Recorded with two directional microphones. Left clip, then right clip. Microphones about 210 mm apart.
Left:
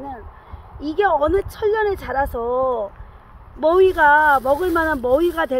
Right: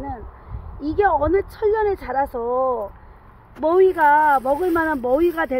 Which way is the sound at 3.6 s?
10° left (ahead or behind).